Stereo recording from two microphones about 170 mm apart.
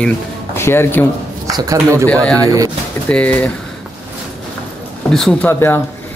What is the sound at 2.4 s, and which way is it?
Speech, 20° right (ahead or behind).